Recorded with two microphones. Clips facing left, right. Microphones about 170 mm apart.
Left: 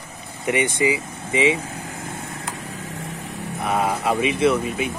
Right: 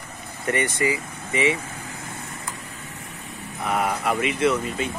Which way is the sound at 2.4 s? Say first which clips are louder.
Left 5 dB; 90° left.